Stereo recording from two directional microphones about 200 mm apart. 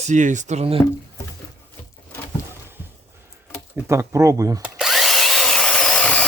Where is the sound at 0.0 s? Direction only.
35° right (ahead or behind).